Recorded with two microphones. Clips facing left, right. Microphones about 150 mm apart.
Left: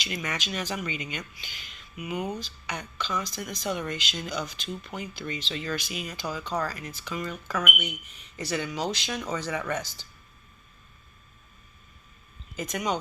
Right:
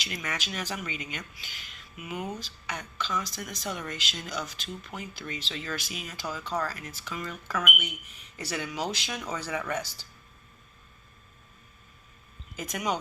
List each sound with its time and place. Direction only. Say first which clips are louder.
0.0 s speech: left 3 dB; centre (ahead or behind)
7.3 s speech: even; 10° left (ahead or behind)
8.1 s speech: left 4 dB; 10° right (ahead or behind)
12.5 s speech: left 2 dB; 5° right (ahead or behind)